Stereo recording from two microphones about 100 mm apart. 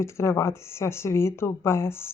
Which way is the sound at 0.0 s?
25° left (ahead or behind).